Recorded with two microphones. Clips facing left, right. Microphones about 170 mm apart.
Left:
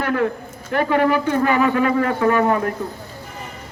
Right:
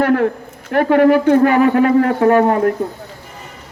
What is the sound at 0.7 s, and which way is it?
Speech, 55° right (ahead or behind).